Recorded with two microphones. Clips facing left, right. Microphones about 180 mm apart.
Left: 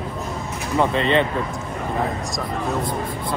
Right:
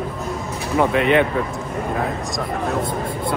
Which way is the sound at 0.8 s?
10° right (ahead or behind).